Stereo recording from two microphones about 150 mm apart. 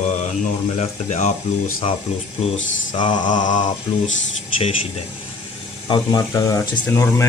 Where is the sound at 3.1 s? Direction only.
55° left (ahead or behind).